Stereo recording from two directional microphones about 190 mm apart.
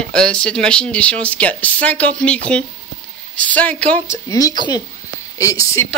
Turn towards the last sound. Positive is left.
turn(degrees=15)  # may be behind; listen again after turning